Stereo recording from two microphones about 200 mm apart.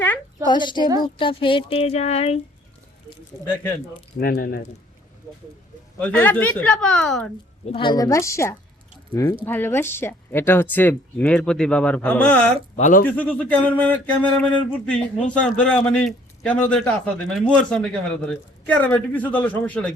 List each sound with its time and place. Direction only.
0.4 s speech: 20° left (ahead or behind)
3.3 s speech: 15° left (ahead or behind)
4.2 s speech: 45° left (ahead or behind)
6.0 s a sound: 10° left (ahead or behind)
7.7 s speech: 25° left (ahead or behind); by 12.5 s 5° left (ahead or behind)
12.7 s speech: 40° left (ahead or behind)
13.1 s a sound: 10° left (ahead or behind)